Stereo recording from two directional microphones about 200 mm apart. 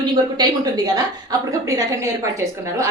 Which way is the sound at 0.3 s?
20° right (ahead or behind).